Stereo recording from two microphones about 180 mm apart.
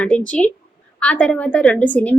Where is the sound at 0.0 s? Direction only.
5° left (ahead or behind).